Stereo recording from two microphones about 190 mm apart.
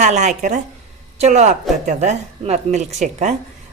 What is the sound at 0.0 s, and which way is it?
A woman's voice, 40° right (ahead or behind).